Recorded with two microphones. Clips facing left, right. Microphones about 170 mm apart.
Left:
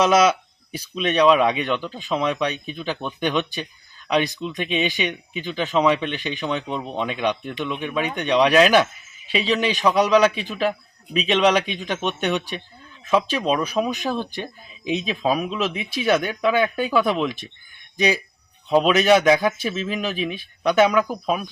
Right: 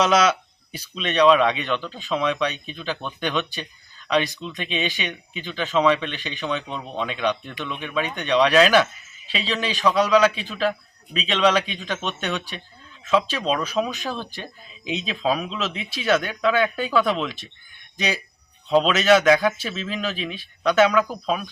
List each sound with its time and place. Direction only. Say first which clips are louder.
0.0 s speech: left 2 dB; 10° left (ahead or behind)